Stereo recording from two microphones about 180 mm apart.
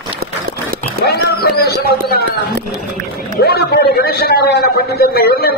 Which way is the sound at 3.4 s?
60° left (ahead or behind).